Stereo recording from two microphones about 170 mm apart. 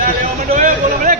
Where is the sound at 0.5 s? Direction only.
50° right (ahead or behind).